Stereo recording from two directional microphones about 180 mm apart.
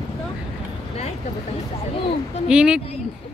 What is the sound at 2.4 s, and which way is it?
Speech, 5° right (ahead or behind).